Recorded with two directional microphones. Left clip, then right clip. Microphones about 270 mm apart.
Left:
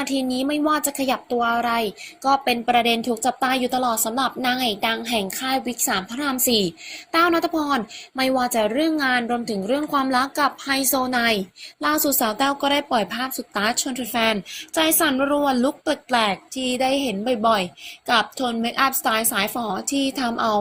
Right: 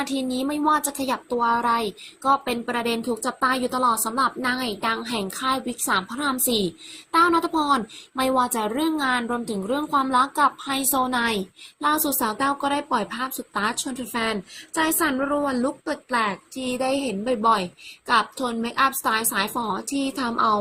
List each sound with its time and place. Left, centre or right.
0.0 s a woman's voice: centre